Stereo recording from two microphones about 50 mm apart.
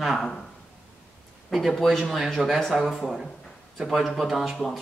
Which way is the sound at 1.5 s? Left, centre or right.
Centre.